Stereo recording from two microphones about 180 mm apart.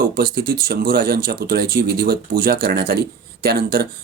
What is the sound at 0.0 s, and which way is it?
Speech, 55° right (ahead or behind).